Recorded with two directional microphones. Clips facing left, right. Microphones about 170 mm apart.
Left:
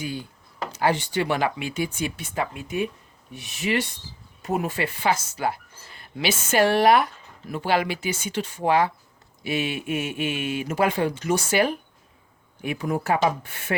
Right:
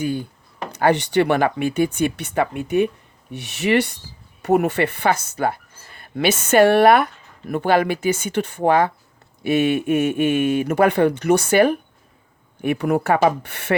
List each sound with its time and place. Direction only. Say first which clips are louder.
0.0 s speech: right 8 dB; 55° right (ahead or behind); by 13.7 s 70° right (ahead or behind)